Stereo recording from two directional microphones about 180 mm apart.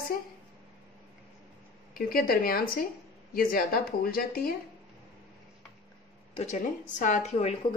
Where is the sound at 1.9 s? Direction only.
55° left (ahead or behind).